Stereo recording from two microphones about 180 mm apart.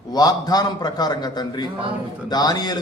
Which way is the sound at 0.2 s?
20° left (ahead or behind).